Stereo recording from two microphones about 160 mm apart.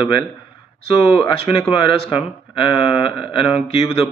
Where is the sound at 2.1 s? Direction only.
35° left (ahead or behind).